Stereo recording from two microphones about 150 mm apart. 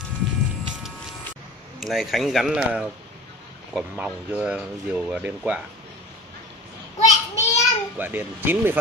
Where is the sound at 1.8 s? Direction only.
Centre (ahead or behind).